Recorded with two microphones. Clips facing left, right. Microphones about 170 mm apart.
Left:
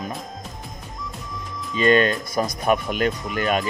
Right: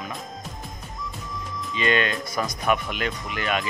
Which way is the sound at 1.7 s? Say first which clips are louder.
Left 6 dB; 40° left (ahead or behind).